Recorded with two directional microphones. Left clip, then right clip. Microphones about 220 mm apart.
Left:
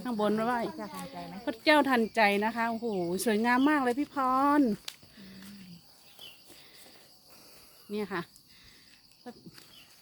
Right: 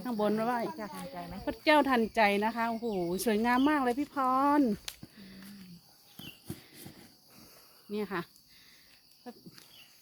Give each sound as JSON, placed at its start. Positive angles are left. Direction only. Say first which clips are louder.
{"t": 0.0, "sound": "speech", "louder": "left 1 dB", "side_deg": 10}
{"t": 0.8, "sound": "speech", "louder": "even", "side_deg": -10}
{"t": 1.5, "sound": "speech", "louder": "left 1 dB", "side_deg": 5}
{"t": 5.1, "sound": "a sound", "louder": "left 1 dB", "side_deg": 0}
{"t": 7.9, "sound": "speech", "louder": "left 1 dB", "side_deg": 0}